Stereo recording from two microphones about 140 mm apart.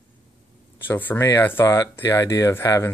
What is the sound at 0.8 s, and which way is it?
Speech, 15° left (ahead or behind).